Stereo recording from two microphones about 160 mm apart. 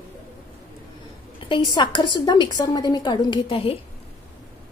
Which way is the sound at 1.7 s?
25° left (ahead or behind).